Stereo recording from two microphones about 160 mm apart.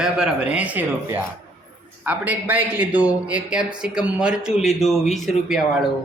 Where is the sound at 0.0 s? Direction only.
5° right (ahead or behind).